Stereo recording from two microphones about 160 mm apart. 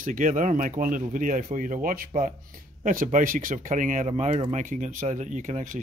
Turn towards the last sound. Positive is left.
turn(degrees=-50)  # may be behind; listen again after turning